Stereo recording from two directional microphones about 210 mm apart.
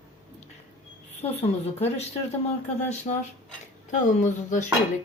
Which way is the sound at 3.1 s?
30° left (ahead or behind).